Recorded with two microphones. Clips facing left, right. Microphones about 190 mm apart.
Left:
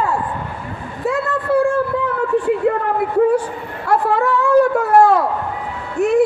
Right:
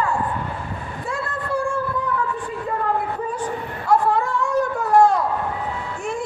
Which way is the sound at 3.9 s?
65° left (ahead or behind).